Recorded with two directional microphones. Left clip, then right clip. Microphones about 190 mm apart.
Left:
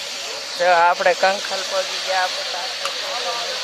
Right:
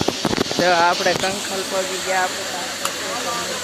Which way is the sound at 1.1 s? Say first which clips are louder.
Left 2 dB; 55° left (ahead or behind).